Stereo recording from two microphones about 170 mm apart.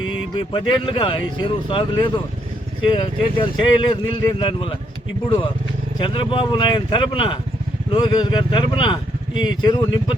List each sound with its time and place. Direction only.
0.3 s speech: 30° left (ahead or behind)
6.0 s speech: 30° left (ahead or behind)